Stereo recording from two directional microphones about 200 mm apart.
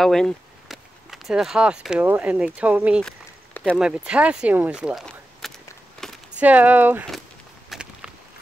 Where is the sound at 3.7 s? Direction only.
5° right (ahead or behind).